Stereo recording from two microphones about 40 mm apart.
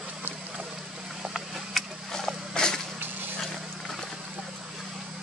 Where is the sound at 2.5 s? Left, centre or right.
Centre.